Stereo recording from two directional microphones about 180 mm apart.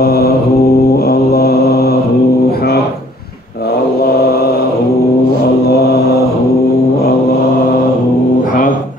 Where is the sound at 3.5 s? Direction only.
60° left (ahead or behind).